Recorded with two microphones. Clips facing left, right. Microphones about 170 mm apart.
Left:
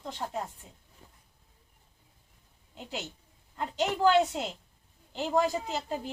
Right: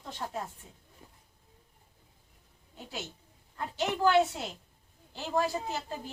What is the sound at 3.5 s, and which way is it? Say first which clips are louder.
Speech: left 2 dB; 20° left (ahead or behind).